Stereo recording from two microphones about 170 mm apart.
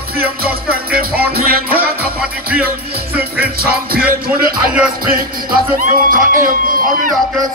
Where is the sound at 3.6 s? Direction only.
60° right (ahead or behind).